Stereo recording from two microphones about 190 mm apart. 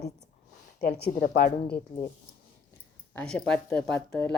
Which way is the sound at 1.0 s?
50° left (ahead or behind).